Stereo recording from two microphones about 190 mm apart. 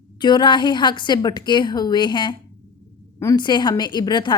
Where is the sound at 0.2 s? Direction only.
25° left (ahead or behind).